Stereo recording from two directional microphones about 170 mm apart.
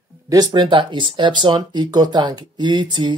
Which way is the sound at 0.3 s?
20° right (ahead or behind).